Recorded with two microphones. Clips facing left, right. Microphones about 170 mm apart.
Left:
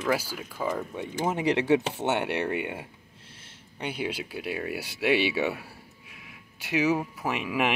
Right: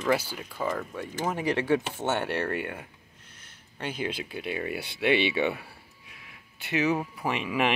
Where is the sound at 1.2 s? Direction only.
20° left (ahead or behind).